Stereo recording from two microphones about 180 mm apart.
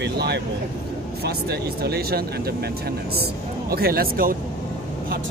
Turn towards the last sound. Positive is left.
turn(degrees=-55)  # may be behind; listen again after turning